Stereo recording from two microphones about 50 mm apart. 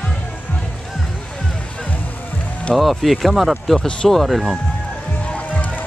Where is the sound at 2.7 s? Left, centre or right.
Centre.